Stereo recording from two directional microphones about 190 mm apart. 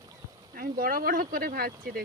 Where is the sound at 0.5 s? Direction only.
50° right (ahead or behind).